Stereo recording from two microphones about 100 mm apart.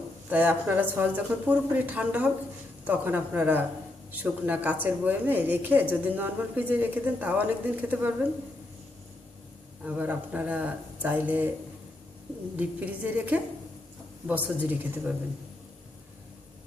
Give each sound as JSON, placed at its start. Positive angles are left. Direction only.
{"t": 0.3, "sound": "speech", "side_deg": -15}
{"t": 9.8, "sound": "speech", "side_deg": -15}
{"t": 12.5, "sound": "speech", "side_deg": -15}